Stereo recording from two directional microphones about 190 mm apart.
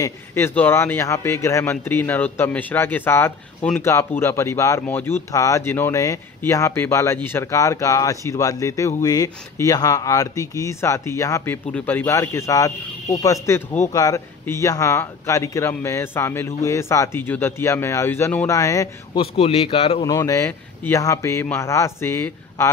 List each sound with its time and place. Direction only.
0.0 s speech: 10° left (ahead or behind)
19.1 s a man's voice: 30° left (ahead or behind)
20.1 s speech: 15° left (ahead or behind)